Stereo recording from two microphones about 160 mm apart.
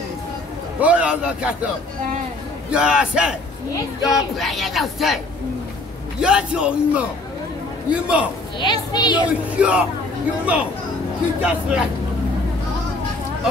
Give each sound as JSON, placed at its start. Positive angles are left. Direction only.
{"t": 0.7, "sound": "a man's voice", "side_deg": -10}
{"t": 2.7, "sound": "speech", "side_deg": -5}
{"t": 6.2, "sound": "a man's voice", "side_deg": -5}
{"t": 8.5, "sound": "a child's voice", "side_deg": 30}
{"t": 9.3, "sound": "a man's voice", "side_deg": -5}